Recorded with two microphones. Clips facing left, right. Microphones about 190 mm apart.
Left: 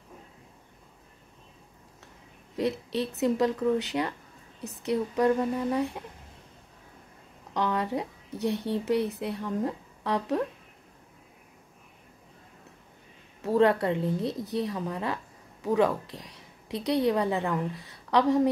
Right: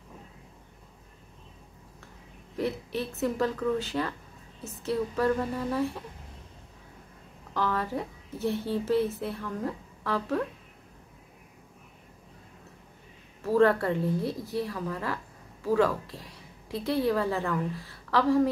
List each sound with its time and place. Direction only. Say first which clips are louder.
2.5 s a woman's voice: left 2 dB; 20° left (ahead or behind)
7.5 s a woman's voice: left 1 dB; 20° left (ahead or behind)
13.4 s a woman's voice: even; 20° left (ahead or behind)